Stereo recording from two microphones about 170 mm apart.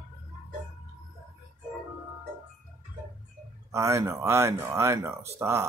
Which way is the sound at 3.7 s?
15° right (ahead or behind).